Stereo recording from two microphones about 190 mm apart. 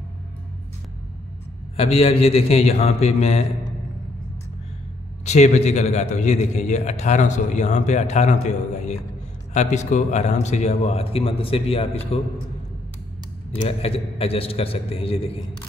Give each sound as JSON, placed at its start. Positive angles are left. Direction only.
{"t": 1.8, "sound": "a man's voice", "side_deg": 30}
{"t": 5.2, "sound": "a man's voice", "side_deg": 35}
{"t": 13.6, "sound": "a man's voice", "side_deg": 30}